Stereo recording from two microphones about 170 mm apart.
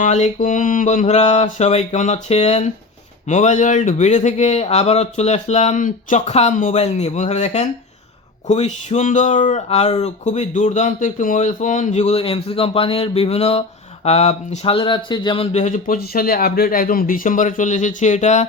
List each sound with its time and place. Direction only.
0.0 s speech: 45° left (ahead or behind); by 15.4 s 25° left (ahead or behind)
15.5 s speech: 45° left (ahead or behind)